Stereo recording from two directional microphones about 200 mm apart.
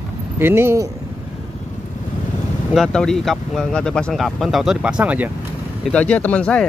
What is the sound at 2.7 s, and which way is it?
Speech, centre (ahead or behind).